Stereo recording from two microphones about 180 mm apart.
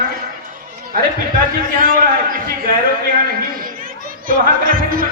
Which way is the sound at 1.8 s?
50° right (ahead or behind).